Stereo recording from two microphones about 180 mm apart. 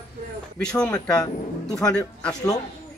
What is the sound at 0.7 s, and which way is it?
Speech, 5° left (ahead or behind).